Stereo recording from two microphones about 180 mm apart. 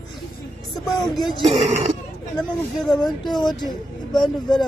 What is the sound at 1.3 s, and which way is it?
Speech, 35° right (ahead or behind).